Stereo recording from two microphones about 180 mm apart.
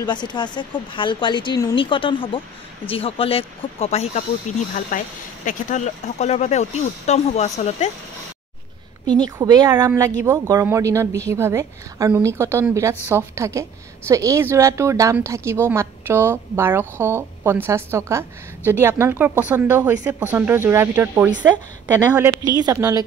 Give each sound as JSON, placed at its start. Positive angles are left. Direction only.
{"t": 0.0, "sound": "speech", "side_deg": 25}
{"t": 9.0, "sound": "speech", "side_deg": -25}